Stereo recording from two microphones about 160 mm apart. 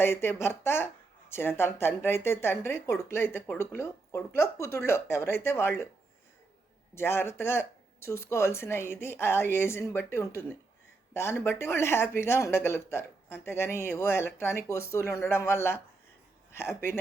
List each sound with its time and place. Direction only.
0.0 s speech: 15° left (ahead or behind)
6.9 s speech: 15° left (ahead or behind)